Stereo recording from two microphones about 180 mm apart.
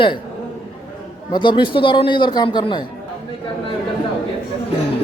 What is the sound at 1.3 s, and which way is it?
A man's voice, 25° left (ahead or behind).